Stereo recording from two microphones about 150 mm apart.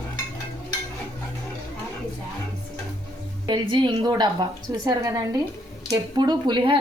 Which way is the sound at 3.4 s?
30° right (ahead or behind).